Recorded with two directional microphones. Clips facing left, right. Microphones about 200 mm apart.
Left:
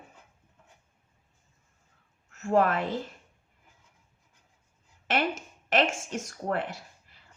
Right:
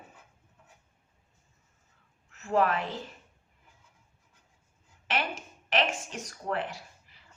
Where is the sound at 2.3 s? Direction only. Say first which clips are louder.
Left 2 dB; 45° left (ahead or behind).